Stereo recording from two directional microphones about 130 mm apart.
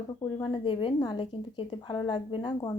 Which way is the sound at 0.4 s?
40° left (ahead or behind).